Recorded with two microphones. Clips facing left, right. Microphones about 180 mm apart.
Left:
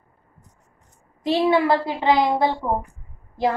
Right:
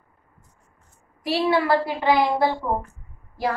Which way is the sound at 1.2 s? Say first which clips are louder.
Left 3 dB; 20° left (ahead or behind).